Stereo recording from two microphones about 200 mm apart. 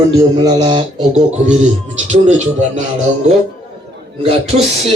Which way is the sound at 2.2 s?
35° right (ahead or behind).